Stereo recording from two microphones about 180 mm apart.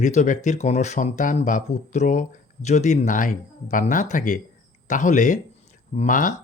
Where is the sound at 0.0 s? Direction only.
40° left (ahead or behind).